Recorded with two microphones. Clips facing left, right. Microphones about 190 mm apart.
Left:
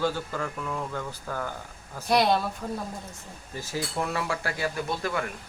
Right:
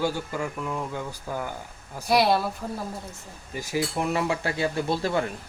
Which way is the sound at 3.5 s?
15° right (ahead or behind).